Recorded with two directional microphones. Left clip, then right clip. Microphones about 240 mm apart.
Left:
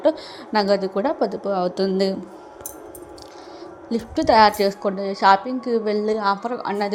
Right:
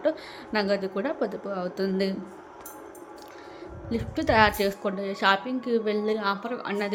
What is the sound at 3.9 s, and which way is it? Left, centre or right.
A woman's voice, centre.